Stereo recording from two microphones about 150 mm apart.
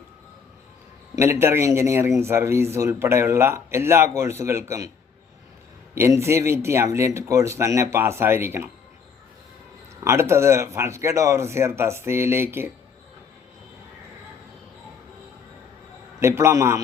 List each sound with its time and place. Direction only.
1.1 s speech: 15° right (ahead or behind)
5.9 s speech: 20° right (ahead or behind)
10.0 s speech: 20° right (ahead or behind)
16.2 s speech: 15° right (ahead or behind)